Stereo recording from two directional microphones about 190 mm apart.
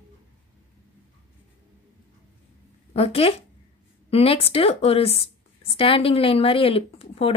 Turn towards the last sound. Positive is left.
turn(degrees=30)  # may be behind; listen again after turning